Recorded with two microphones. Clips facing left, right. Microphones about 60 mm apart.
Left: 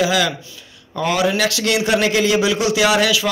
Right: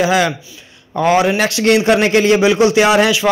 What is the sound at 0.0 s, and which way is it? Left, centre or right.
A man's voice, right.